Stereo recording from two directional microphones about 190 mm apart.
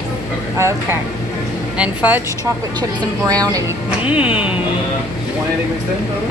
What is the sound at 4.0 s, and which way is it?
Speech, 5° right (ahead or behind).